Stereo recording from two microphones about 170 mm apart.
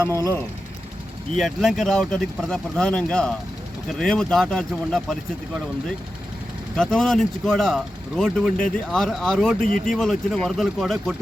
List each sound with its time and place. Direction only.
0.0 s speech: 20° right (ahead or behind)
1.4 s speech: centre (ahead or behind)
6.7 s speech: 5° left (ahead or behind)